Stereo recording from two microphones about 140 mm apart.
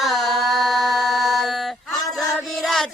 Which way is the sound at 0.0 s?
Centre (ahead or behind).